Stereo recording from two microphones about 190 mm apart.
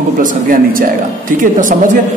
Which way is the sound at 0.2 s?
45° right (ahead or behind).